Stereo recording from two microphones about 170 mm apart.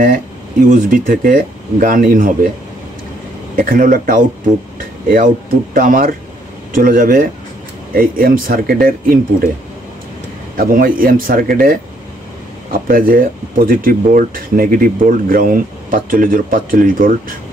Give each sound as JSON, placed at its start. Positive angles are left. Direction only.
{"t": 0.7, "sound": "speech", "side_deg": -50}
{"t": 3.5, "sound": "speech", "side_deg": -55}
{"t": 10.6, "sound": "speech", "side_deg": -55}